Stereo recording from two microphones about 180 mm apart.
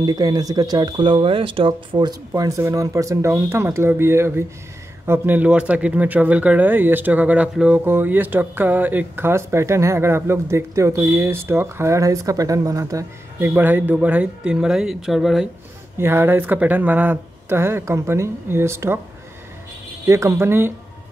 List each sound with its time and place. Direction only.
0.0 s speech: 20° right (ahead or behind); by 15.4 s centre (ahead or behind)
16.0 s speech: 15° right (ahead or behind)
20.1 s speech: 15° right (ahead or behind)